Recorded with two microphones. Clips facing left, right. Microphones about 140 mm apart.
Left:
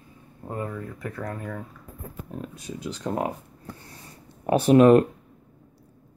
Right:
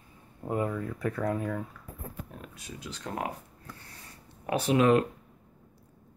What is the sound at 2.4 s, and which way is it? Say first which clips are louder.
Speech: left 8 dB; 35° left (ahead or behind).